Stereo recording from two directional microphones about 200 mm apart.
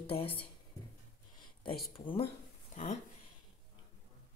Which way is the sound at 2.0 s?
25° left (ahead or behind).